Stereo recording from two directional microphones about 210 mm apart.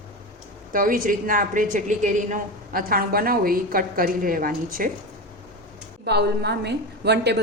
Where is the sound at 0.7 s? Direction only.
40° right (ahead or behind).